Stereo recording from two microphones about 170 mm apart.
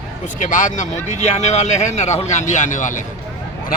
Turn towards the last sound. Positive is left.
turn(degrees=50)  # may be behind; listen again after turning